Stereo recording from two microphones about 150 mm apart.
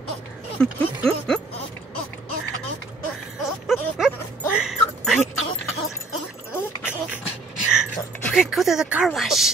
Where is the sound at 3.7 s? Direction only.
Centre (ahead or behind).